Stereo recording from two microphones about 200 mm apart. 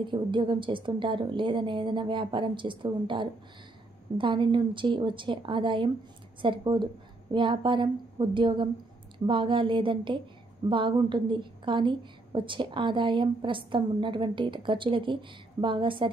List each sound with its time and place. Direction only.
0.0 s a woman's voice: 25° right (ahead or behind)